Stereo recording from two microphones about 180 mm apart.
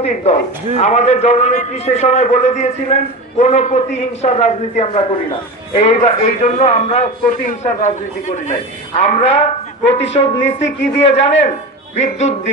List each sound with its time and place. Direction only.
0.0 s a man's voice: 35° left (ahead or behind)